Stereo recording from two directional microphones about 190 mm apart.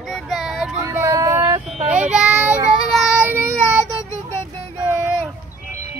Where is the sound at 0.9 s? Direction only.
15° right (ahead or behind).